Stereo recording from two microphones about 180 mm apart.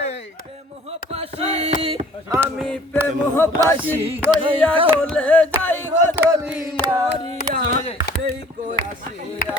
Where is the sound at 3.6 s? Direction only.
10° left (ahead or behind).